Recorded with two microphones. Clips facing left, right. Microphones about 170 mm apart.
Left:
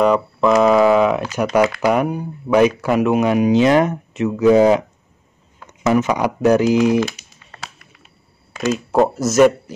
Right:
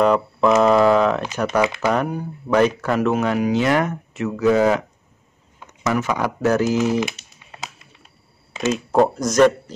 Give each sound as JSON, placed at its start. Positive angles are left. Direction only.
{"t": 0.0, "sound": "speech", "side_deg": 0}
{"t": 1.6, "sound": "speech", "side_deg": -20}
{"t": 1.9, "sound": "speech", "side_deg": 15}
{"t": 7.0, "sound": "a sound", "side_deg": -15}
{"t": 8.5, "sound": "a man's voice", "side_deg": 0}